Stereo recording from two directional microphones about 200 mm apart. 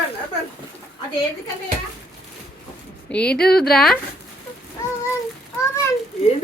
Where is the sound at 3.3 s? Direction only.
50° left (ahead or behind).